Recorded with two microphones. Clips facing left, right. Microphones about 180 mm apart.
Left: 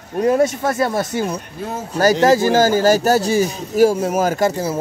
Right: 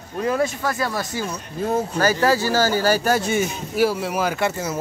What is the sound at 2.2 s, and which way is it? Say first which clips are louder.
Speech: left 7 dB; 45° left (ahead or behind).